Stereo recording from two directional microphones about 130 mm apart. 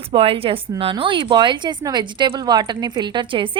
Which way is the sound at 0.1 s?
45° right (ahead or behind).